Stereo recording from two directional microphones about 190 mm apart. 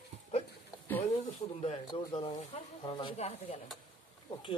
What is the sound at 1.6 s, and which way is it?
Speech, 25° left (ahead or behind).